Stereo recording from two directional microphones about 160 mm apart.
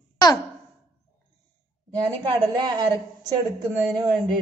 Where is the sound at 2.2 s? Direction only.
25° right (ahead or behind).